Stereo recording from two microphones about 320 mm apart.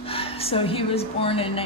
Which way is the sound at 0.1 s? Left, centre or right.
Centre.